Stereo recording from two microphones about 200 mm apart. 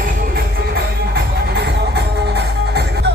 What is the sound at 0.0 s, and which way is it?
Music, 50° right (ahead or behind).